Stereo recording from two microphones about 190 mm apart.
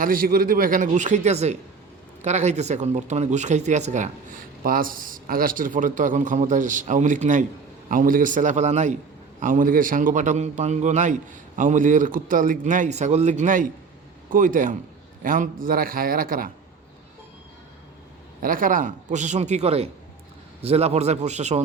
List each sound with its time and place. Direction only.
0.0 s a man's voice: 50° right (ahead or behind)
18.4 s a man's voice: 45° right (ahead or behind)